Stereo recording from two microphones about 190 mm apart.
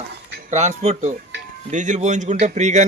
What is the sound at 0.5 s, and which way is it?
Speech, 35° right (ahead or behind).